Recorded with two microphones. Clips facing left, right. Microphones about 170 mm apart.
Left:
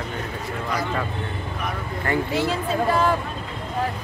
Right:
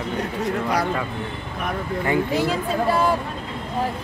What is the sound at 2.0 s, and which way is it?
Speech, 15° right (ahead or behind).